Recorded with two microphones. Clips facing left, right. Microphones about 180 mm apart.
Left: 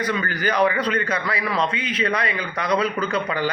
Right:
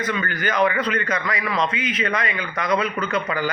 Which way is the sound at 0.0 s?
35° left (ahead or behind).